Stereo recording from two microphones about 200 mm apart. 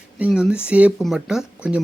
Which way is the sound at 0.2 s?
5° right (ahead or behind).